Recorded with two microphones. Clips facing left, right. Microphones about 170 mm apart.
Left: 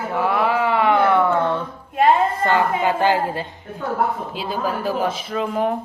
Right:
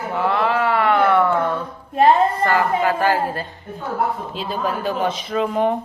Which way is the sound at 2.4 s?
20° left (ahead or behind).